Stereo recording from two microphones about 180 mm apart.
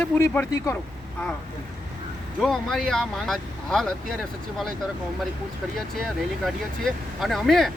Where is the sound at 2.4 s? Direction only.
Centre (ahead or behind).